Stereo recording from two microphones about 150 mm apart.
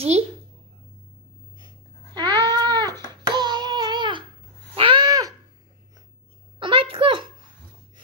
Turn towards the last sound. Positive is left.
turn(degrees=-35)  # may be behind; listen again after turning